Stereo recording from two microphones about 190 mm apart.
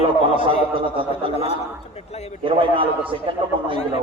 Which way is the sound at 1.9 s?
35° left (ahead or behind).